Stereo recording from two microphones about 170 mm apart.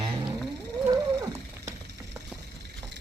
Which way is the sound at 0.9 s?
20° right (ahead or behind).